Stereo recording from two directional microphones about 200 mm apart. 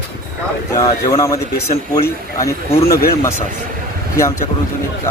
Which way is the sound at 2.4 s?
15° left (ahead or behind).